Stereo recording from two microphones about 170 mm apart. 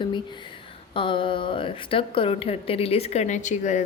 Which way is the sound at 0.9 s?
30° left (ahead or behind).